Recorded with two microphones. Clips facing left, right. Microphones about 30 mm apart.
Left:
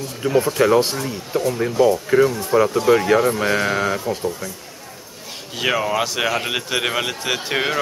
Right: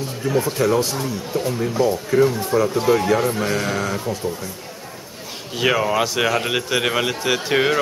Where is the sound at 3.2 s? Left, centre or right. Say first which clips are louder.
Left 3 dB; centre.